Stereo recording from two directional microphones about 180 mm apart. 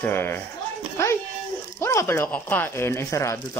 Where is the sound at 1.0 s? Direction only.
15° left (ahead or behind).